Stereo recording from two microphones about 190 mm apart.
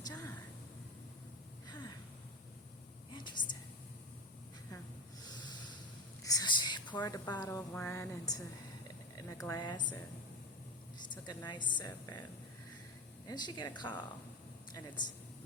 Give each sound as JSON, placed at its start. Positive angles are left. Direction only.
{"t": 0.0, "sound": "a sound", "side_deg": 20}
{"t": 3.1, "sound": "whispering", "side_deg": 25}
{"t": 5.2, "sound": "snort", "side_deg": 20}
{"t": 6.2, "sound": "a woman's voice", "side_deg": 20}
{"t": 11.1, "sound": "a woman's voice", "side_deg": 25}
{"t": 13.2, "sound": "a man's voice", "side_deg": 20}